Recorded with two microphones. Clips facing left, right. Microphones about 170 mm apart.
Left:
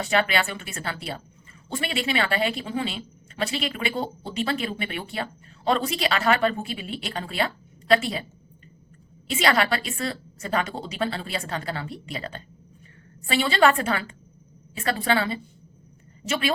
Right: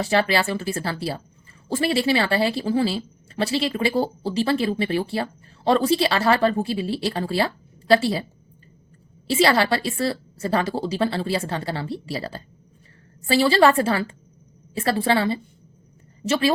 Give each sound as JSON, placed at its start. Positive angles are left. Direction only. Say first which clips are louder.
{"t": 0.0, "sound": "a woman's voice", "louder": "right 3 dB", "side_deg": -30}